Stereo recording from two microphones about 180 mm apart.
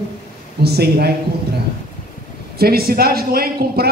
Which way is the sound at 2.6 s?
55° right (ahead or behind).